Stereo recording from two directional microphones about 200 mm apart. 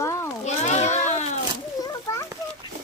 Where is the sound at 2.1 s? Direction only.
15° left (ahead or behind).